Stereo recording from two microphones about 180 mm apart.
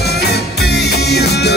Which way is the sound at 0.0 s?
65° left (ahead or behind).